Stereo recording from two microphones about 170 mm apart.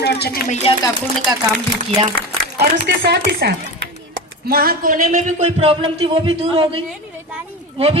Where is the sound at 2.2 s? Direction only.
65° right (ahead or behind).